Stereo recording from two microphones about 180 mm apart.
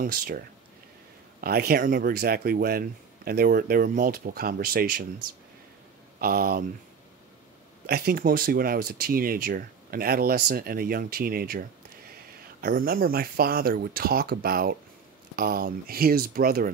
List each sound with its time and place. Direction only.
0.0 s speech: 50° right (ahead or behind)
1.4 s speech: 55° right (ahead or behind)
6.2 s speech: 55° right (ahead or behind)
7.8 s speech: 55° right (ahead or behind)
12.6 s speech: 55° right (ahead or behind)